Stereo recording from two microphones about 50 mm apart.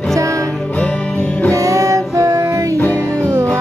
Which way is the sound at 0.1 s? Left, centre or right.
Right.